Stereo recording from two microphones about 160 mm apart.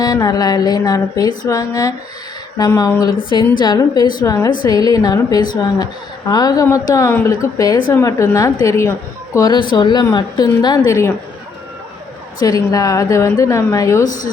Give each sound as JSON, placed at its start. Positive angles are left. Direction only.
{"t": 0.0, "sound": "a woman's voice", "side_deg": 25}
{"t": 12.4, "sound": "a woman's voice", "side_deg": 20}